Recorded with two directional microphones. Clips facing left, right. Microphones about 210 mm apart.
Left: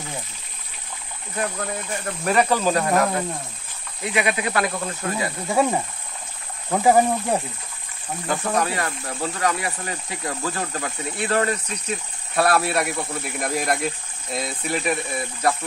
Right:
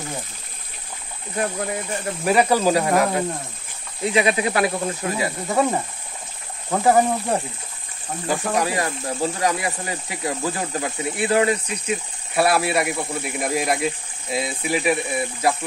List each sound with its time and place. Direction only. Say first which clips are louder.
1.4 s speech: right 2 dB; 15° right (ahead or behind)
2.2 s speech: right 2 dB; 10° right (ahead or behind)
4.0 s speech: right 4 dB; 25° right (ahead or behind)
5.5 s speech: left 1 dB; 5° left (ahead or behind)
8.5 s speech: right 1 dB; 15° right (ahead or behind)